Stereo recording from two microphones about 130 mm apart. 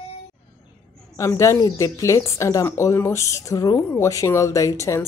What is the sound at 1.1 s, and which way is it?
Speech, 20° left (ahead or behind).